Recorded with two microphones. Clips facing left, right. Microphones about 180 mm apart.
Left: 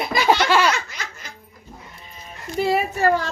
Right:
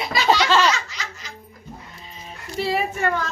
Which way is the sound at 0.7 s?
55° left (ahead or behind).